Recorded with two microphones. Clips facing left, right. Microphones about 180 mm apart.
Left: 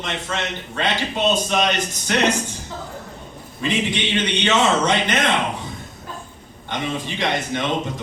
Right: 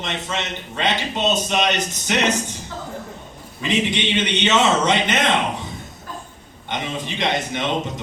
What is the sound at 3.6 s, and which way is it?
A man's voice, 20° right (ahead or behind).